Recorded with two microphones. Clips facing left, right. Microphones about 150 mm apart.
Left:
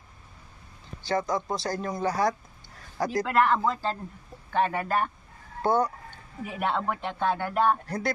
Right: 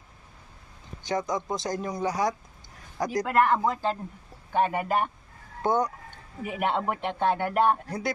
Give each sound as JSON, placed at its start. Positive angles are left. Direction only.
{"t": 1.0, "sound": "a man's voice", "side_deg": -15}